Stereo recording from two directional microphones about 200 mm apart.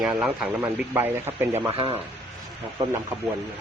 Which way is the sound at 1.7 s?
25° right (ahead or behind).